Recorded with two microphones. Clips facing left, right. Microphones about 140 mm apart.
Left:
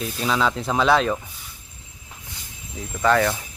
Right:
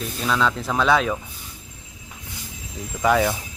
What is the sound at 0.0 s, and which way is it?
Speech, centre (ahead or behind).